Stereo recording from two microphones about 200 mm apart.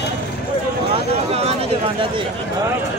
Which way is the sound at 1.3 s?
30° right (ahead or behind).